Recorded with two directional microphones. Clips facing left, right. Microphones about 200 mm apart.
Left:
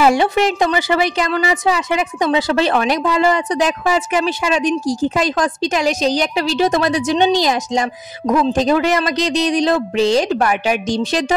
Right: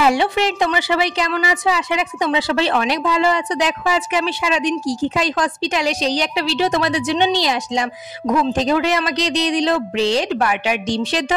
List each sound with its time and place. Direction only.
0.0 s a woman's voice: 45° left (ahead or behind)